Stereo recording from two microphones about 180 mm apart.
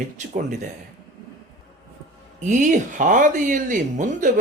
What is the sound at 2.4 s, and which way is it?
Speech, 45° right (ahead or behind).